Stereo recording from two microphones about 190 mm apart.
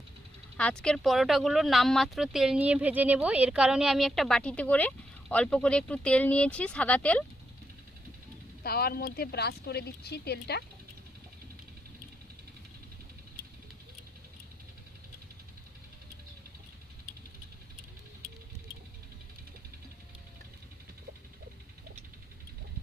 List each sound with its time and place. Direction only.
0.5 s speech: 5° left (ahead or behind)
8.6 s speech: 55° left (ahead or behind)